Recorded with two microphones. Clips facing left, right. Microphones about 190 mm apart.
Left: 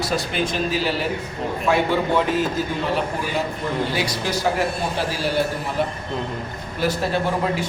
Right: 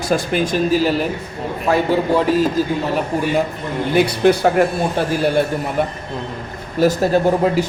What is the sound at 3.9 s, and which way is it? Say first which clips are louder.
A man's voice: right 10 dB; 55° right (ahead or behind).